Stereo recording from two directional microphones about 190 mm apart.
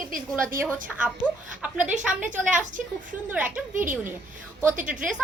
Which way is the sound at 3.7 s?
45° right (ahead or behind).